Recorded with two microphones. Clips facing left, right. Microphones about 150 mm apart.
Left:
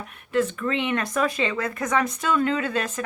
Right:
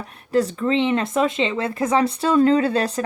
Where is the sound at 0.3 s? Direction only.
35° right (ahead or behind).